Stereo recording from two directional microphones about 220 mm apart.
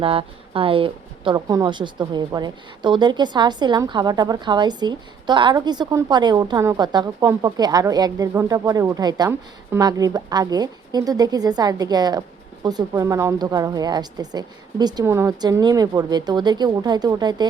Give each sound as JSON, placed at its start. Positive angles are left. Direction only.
{"t": 0.0, "sound": "a woman's voice", "side_deg": -25}